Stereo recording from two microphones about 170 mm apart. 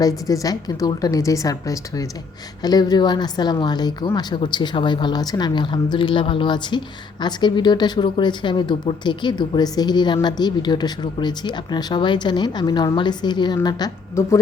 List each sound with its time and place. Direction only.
0.0 s a woman's voice: 20° left (ahead or behind)